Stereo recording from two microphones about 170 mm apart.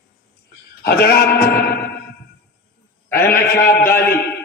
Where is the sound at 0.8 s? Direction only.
70° left (ahead or behind).